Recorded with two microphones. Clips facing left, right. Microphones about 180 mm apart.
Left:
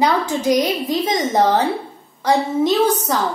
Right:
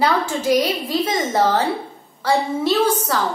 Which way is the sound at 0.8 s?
15° left (ahead or behind).